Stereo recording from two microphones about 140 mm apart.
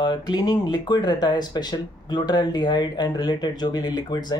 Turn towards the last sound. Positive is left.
turn(degrees=30)  # may be behind; listen again after turning